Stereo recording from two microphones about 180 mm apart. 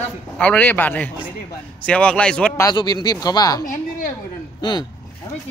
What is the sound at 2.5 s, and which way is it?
Speech, 20° left (ahead or behind).